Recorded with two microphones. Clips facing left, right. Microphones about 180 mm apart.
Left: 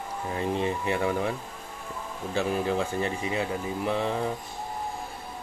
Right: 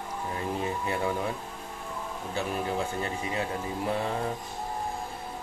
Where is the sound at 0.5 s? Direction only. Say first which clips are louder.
Left 3 dB; 25° left (ahead or behind).